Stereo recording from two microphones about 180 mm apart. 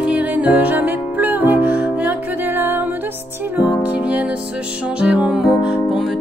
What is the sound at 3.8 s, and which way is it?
Music, 10° right (ahead or behind).